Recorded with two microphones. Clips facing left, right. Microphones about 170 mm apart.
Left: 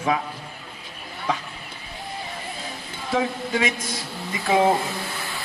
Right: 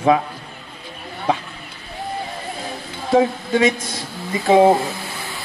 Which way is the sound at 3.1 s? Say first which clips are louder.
Right 8 dB; 35° right (ahead or behind).